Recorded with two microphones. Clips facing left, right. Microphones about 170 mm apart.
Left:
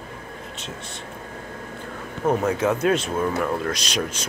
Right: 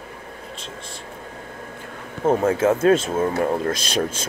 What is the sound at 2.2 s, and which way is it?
Speech, 30° right (ahead or behind).